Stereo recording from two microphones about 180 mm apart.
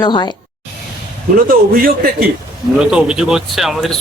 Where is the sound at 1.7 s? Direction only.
55° right (ahead or behind).